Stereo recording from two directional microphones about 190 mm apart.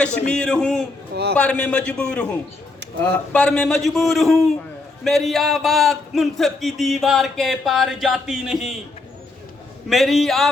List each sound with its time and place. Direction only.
0.3 s speech: 5° left (ahead or behind)
1.1 s a man's voice: 60° right (ahead or behind)
1.4 s a man's voice: 5° left (ahead or behind)
3.3 s speech: 5° left (ahead or behind)
9.9 s speech: centre (ahead or behind)